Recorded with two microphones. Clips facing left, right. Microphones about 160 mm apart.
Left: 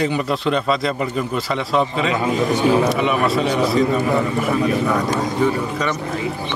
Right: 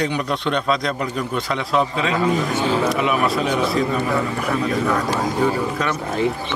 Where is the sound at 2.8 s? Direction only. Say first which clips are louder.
Left 1 dB; centre (ahead or behind).